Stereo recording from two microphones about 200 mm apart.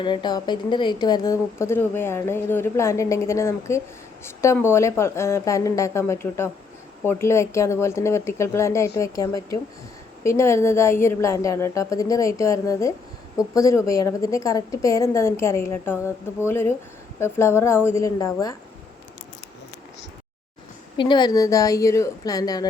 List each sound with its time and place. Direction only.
0.0 s a woman's voice: 20° left (ahead or behind)
21.0 s a woman's voice: 20° left (ahead or behind)